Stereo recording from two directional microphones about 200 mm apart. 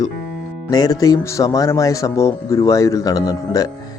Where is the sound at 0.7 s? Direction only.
20° left (ahead or behind).